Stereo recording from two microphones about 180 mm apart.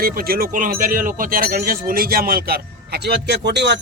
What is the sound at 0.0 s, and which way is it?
Speech, 55° right (ahead or behind).